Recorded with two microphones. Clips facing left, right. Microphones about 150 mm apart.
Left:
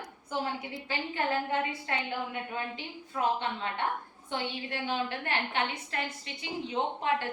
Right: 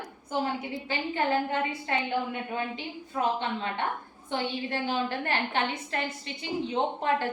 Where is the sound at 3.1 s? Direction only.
25° right (ahead or behind).